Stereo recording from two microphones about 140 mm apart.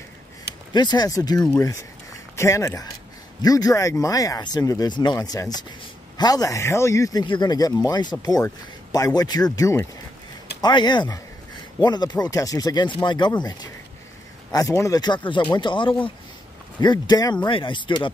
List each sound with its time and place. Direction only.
0.7 s speech: 30° left (ahead or behind)